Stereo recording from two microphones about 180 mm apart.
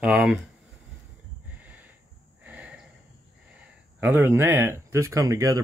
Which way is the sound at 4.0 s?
10° right (ahead or behind).